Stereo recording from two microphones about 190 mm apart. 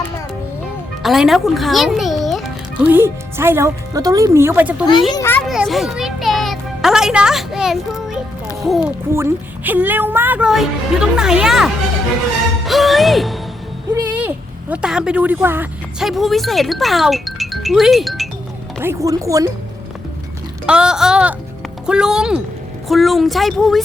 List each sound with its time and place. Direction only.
1.0 s a child's voice: centre (ahead or behind)
2.8 s a woman's voice: 10° right (ahead or behind)
5.1 s children playing: 10° left (ahead or behind)
5.5 s music: centre (ahead or behind)
8.6 s speech: centre (ahead or behind)
9.1 s a woman's voice: 10° right (ahead or behind)
12.6 s music: centre (ahead or behind)
13.9 s speech: 10° right (ahead or behind)
18.8 s a woman's voice: 15° right (ahead or behind)
20.7 s speech: 5° right (ahead or behind)